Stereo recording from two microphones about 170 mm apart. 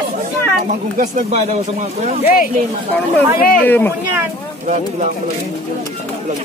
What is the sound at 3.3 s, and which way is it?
Speech, 55° left (ahead or behind).